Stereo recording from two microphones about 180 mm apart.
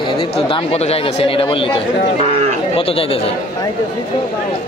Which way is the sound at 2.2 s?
35° right (ahead or behind).